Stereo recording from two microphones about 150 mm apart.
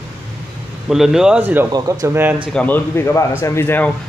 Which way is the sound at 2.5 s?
10° left (ahead or behind).